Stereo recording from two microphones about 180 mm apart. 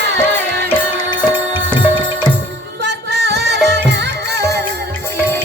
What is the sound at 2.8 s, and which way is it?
Music, 75° right (ahead or behind).